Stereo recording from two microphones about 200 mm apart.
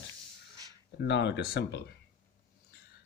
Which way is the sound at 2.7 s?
55° left (ahead or behind).